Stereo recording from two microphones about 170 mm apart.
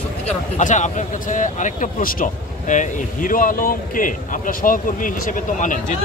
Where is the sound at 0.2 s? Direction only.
45° left (ahead or behind).